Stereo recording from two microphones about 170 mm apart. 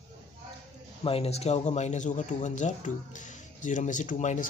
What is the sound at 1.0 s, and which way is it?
Speech, 35° left (ahead or behind).